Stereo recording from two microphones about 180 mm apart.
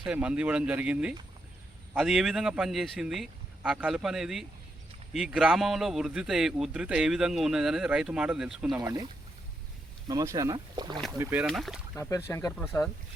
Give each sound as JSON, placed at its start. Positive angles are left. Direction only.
{"t": 0.0, "sound": "a man's voice", "side_deg": -5}
{"t": 8.8, "sound": "speech", "side_deg": -20}
{"t": 10.1, "sound": "speech", "side_deg": -20}
{"t": 11.2, "sound": "speech", "side_deg": -10}
{"t": 11.4, "sound": "a man's voice", "side_deg": 0}
{"t": 11.9, "sound": "speech", "side_deg": 15}